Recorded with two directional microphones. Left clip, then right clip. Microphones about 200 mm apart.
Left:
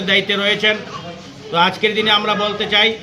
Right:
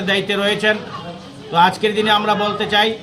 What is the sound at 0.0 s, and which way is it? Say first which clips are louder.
A man's voice: left 2 dB; 20° right (ahead or behind).